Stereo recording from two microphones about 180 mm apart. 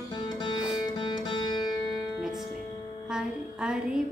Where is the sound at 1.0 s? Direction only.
25° left (ahead or behind).